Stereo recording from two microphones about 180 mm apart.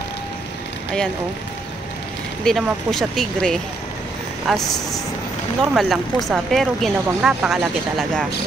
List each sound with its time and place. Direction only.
2.4 s speech: centre (ahead or behind)